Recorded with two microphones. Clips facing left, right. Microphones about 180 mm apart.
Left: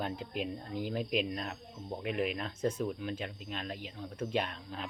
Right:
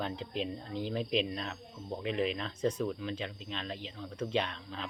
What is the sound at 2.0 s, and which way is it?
Speech, 10° left (ahead or behind).